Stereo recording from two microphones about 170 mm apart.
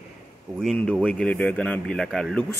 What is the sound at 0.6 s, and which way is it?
A man's voice, 5° left (ahead or behind).